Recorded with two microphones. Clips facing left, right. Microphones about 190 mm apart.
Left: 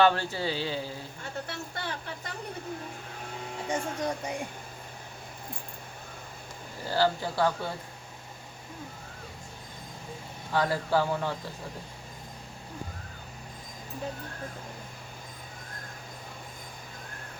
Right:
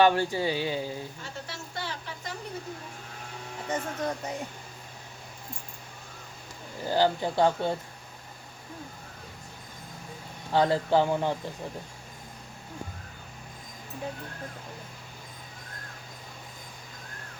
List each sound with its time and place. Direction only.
0.0 s speech: 15° right (ahead or behind)
1.2 s speech: 55° left (ahead or behind)
3.7 s speech: 10° left (ahead or behind)
6.8 s speech: 20° right (ahead or behind)
10.5 s speech: 25° right (ahead or behind)